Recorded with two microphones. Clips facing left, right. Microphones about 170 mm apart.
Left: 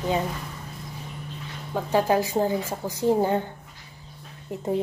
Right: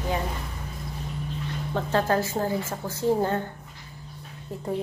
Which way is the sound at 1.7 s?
15° left (ahead or behind).